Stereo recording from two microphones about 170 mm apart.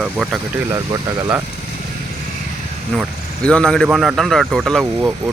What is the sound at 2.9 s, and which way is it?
A man's voice, 5° left (ahead or behind).